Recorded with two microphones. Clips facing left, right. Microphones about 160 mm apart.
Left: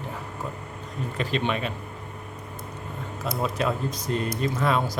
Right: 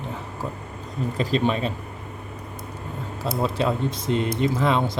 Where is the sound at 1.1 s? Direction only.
35° right (ahead or behind).